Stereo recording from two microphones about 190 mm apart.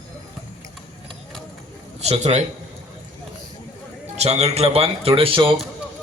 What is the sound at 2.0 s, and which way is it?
Speech, 35° right (ahead or behind).